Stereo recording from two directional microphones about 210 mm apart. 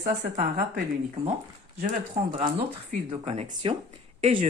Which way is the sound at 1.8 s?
40° right (ahead or behind).